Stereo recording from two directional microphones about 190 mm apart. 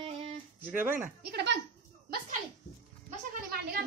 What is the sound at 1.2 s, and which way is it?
Speech, 60° right (ahead or behind).